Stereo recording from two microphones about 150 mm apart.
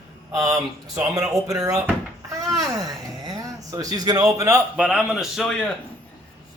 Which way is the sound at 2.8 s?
25° right (ahead or behind).